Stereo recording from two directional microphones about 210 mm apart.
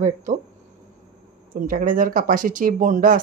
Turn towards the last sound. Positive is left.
turn(degrees=-40)  # may be behind; listen again after turning